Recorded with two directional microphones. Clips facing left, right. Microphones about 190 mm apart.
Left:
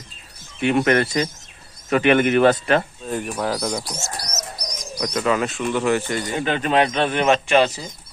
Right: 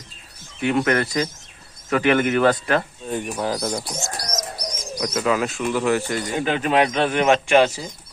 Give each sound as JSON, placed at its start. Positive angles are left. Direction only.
{"t": 0.9, "sound": "speech", "side_deg": 25}
{"t": 3.1, "sound": "speech", "side_deg": 0}
{"t": 3.8, "sound": "bird", "side_deg": -25}
{"t": 4.8, "sound": "speech", "side_deg": 0}